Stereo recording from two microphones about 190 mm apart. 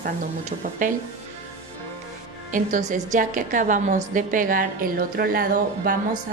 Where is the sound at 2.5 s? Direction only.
40° right (ahead or behind).